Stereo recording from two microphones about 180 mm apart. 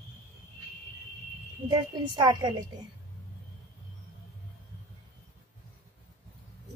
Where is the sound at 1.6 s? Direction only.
25° right (ahead or behind).